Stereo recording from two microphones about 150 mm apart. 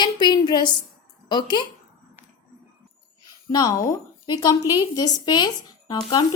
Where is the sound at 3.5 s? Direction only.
25° left (ahead or behind).